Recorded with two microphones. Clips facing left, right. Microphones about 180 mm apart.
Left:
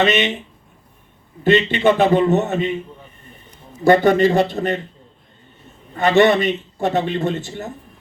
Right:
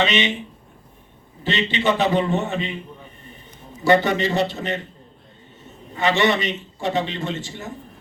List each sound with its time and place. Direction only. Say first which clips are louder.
0.0 s a man's voice: left 4 dB; 50° left (ahead or behind)
1.5 s a man's voice: left 7 dB; 50° left (ahead or behind)
3.8 s a man's voice: left 5 dB; 50° left (ahead or behind)
6.0 s a man's voice: left 6 dB; 55° left (ahead or behind)